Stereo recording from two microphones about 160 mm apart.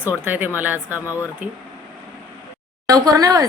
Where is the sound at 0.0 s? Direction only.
10° right (ahead or behind).